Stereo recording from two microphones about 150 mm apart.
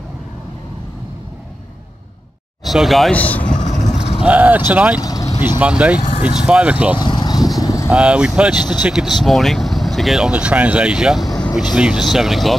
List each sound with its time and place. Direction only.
2.6 s speech: centre (ahead or behind)
3.4 s vehicle: 55° left (ahead or behind)
4.2 s speech: 10° right (ahead or behind)
5.0 s vehicle: 25° left (ahead or behind)
5.6 s speech: 10° right (ahead or behind)
7.0 s vehicle: 30° left (ahead or behind)
7.9 s speech: 10° right (ahead or behind)